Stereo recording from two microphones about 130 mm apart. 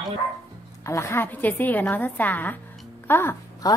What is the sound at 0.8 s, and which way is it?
A woman's voice, 20° left (ahead or behind).